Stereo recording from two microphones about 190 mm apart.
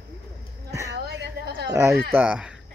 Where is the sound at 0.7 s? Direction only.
15° right (ahead or behind).